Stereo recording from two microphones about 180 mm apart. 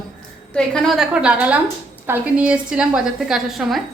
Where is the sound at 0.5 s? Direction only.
5° left (ahead or behind).